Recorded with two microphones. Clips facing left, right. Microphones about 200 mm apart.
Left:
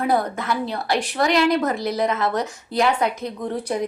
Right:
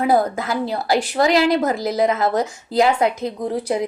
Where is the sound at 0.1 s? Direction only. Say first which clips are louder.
Right 3 dB; 35° right (ahead or behind).